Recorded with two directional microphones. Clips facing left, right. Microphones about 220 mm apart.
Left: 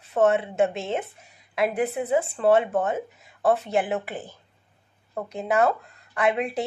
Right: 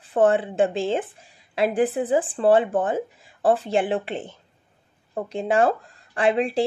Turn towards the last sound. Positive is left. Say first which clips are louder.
# right 3 dB
turn(degrees=-30)  # may be behind; listen again after turning